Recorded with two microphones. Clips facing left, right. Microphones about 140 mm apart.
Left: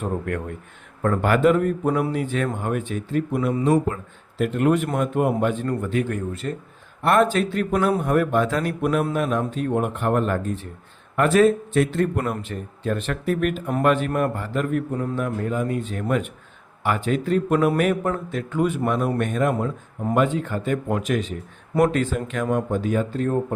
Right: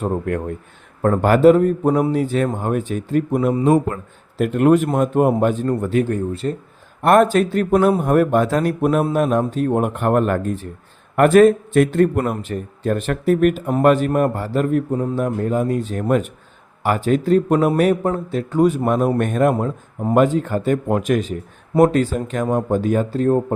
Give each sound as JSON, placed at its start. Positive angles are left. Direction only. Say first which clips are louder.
{"t": 0.0, "sound": "a man's voice", "louder": "right 5 dB", "side_deg": -35}
{"t": 7.0, "sound": "a man's voice", "louder": "right 5 dB", "side_deg": -45}